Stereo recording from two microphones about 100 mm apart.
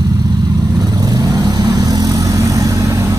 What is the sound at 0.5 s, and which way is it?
Vehicle, 40° right (ahead or behind).